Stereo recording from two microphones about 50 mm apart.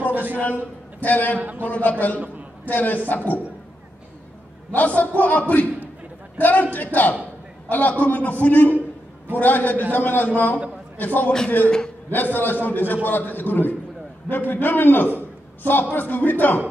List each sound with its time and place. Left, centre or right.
0.1 s a sound: right
0.4 s a man's voice: left
4.7 s a man's voice: left
12.4 s a man's voice: left